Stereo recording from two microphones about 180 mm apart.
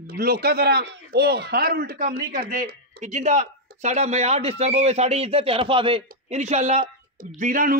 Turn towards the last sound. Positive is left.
turn(degrees=-50)  # may be behind; listen again after turning